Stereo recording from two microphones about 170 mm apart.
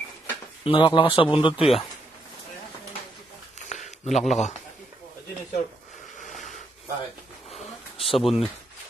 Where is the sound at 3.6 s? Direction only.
45° left (ahead or behind).